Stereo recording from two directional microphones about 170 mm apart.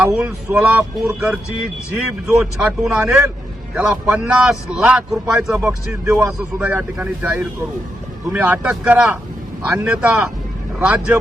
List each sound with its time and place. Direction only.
0.0 s a man's voice: 5° right (ahead or behind)
5.5 s a man's voice: 15° right (ahead or behind)